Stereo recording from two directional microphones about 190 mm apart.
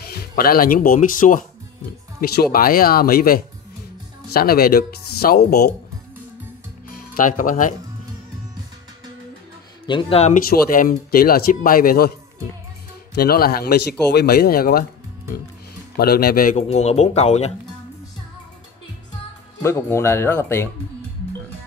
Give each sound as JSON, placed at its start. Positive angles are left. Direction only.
{"t": 0.0, "sound": "speech", "side_deg": 55}
{"t": 7.0, "sound": "speech", "side_deg": 45}
{"t": 9.8, "sound": "speech", "side_deg": 25}
{"t": 13.1, "sound": "speech", "side_deg": 55}
{"t": 16.0, "sound": "speech", "side_deg": 55}
{"t": 19.6, "sound": "speech", "side_deg": 15}